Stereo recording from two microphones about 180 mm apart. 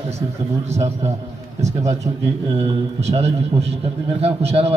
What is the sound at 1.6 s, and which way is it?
Speech, 40° right (ahead or behind).